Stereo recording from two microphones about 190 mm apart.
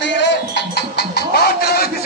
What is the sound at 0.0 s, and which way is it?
Music, 65° left (ahead or behind).